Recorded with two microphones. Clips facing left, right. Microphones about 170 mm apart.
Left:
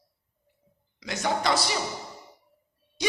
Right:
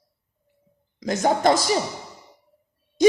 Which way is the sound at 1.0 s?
45° right (ahead or behind).